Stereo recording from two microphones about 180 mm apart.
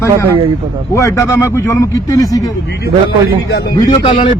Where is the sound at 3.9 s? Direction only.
30° left (ahead or behind).